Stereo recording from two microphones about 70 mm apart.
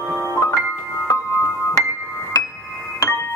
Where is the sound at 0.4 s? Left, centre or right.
Left.